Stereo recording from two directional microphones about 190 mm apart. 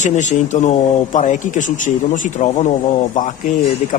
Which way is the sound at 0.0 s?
40° left (ahead or behind).